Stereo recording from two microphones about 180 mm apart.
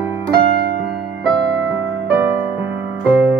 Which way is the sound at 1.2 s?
Centre (ahead or behind).